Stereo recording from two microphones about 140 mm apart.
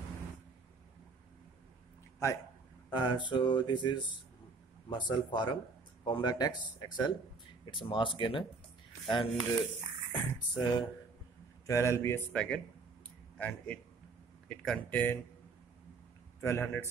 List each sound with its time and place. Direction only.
2.9 s speech: 30° left (ahead or behind)
10.5 s a man's voice: 30° left (ahead or behind); by 15.1 s 10° left (ahead or behind)
16.3 s a man's voice: 15° left (ahead or behind)